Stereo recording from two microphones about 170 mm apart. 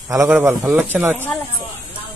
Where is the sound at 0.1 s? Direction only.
15° right (ahead or behind).